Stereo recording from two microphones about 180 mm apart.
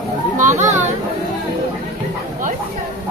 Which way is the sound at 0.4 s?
45° right (ahead or behind).